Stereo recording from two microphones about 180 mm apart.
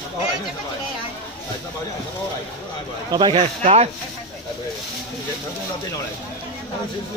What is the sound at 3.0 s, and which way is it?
Speech, 25° right (ahead or behind).